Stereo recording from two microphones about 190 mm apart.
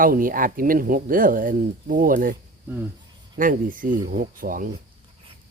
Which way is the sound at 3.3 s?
45° right (ahead or behind).